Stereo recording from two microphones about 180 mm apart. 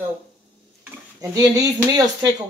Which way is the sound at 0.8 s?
20° right (ahead or behind).